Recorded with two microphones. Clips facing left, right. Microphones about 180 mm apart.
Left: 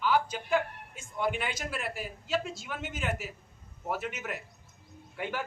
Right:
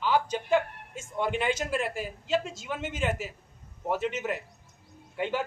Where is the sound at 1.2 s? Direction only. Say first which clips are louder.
Right 4 dB; 25° right (ahead or behind).